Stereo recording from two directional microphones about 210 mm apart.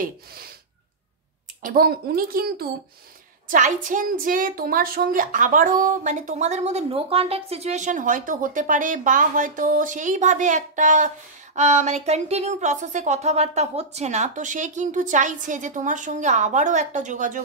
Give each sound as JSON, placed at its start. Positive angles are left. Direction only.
{"t": 0.0, "sound": "speech", "side_deg": -45}
{"t": 1.6, "sound": "a woman's voice", "side_deg": -45}